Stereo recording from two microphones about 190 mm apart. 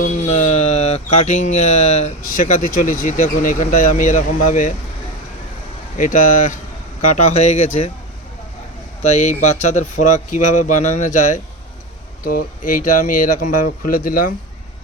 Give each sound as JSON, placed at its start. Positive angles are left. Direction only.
{"t": 0.0, "sound": "a sound", "side_deg": 40}
{"t": 6.0, "sound": "speech", "side_deg": 45}
{"t": 9.0, "sound": "speech", "side_deg": 35}
{"t": 12.2, "sound": "speech", "side_deg": 50}